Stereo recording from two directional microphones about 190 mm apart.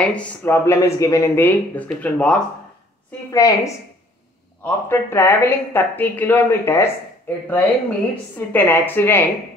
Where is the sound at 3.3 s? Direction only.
15° left (ahead or behind).